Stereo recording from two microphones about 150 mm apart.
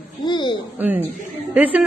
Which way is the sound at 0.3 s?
30° left (ahead or behind).